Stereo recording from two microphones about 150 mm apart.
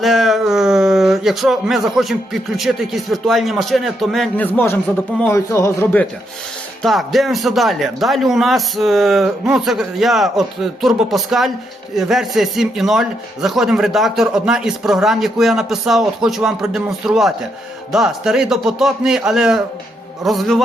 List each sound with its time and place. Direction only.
0.0 s speech: centre (ahead or behind)
4.4 s speech: 15° left (ahead or behind)
6.8 s a man's voice: centre (ahead or behind)